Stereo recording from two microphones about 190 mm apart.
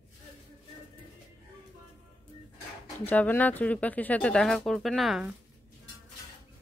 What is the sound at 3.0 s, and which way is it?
Speech, 10° left (ahead or behind).